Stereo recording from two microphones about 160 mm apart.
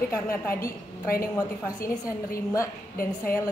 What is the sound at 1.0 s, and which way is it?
Speech, 65° left (ahead or behind).